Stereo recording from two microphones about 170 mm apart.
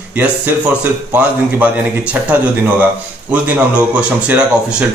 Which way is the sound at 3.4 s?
5° right (ahead or behind).